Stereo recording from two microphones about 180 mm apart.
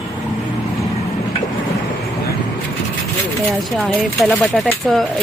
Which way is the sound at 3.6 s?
Centre (ahead or behind).